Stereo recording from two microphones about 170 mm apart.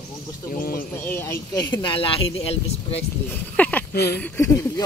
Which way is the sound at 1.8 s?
30° left (ahead or behind).